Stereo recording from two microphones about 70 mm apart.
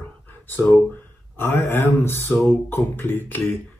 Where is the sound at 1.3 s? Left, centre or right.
Left.